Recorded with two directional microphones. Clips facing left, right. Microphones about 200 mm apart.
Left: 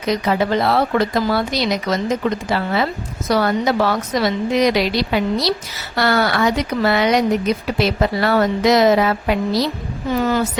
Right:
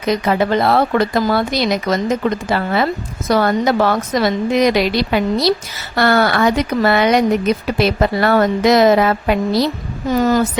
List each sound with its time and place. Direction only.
0.3 s a woman's voice: 55° right (ahead or behind)
10.1 s a woman's voice: 40° right (ahead or behind)